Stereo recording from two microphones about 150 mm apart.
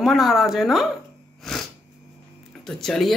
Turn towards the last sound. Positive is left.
turn(degrees=0)  # may be behind; listen again after turning